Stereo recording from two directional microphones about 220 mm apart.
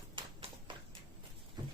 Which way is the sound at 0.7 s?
20° right (ahead or behind).